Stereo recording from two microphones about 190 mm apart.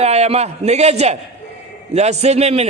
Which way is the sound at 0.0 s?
35° right (ahead or behind).